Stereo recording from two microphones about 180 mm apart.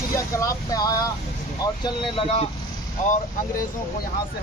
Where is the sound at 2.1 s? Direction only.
30° left (ahead or behind).